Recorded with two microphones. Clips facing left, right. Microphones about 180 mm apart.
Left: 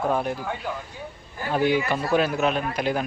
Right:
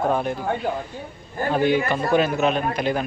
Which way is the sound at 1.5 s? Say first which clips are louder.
Right 2 dB; 5° left (ahead or behind).